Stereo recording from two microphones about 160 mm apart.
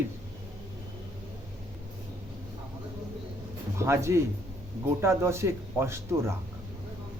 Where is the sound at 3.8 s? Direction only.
15° right (ahead or behind).